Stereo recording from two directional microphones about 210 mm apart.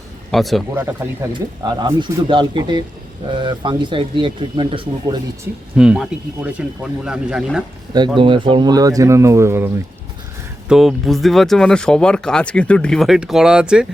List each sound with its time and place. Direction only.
0.3 s speech: centre (ahead or behind)
1.3 s speech: 20° right (ahead or behind)
5.7 s speech: 5° right (ahead or behind)
7.9 s speech: 20° right (ahead or behind)
10.7 s speech: centre (ahead or behind)